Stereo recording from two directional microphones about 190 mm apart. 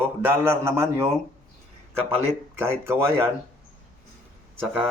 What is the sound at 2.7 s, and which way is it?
Speech, 15° right (ahead or behind).